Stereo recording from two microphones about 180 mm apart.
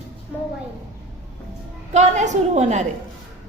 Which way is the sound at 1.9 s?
40° right (ahead or behind).